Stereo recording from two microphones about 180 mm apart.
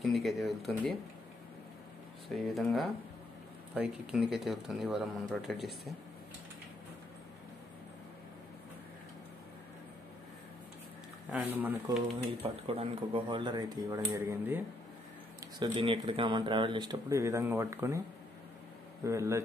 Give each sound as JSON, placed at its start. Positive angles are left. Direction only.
{"t": 0.0, "sound": "speech", "side_deg": 0}
{"t": 2.2, "sound": "speech", "side_deg": 0}
{"t": 4.1, "sound": "speech", "side_deg": -5}
{"t": 11.2, "sound": "speech", "side_deg": -10}
{"t": 12.6, "sound": "speech", "side_deg": -30}
{"t": 15.4, "sound": "speech", "side_deg": -25}
{"t": 19.0, "sound": "speech", "side_deg": -15}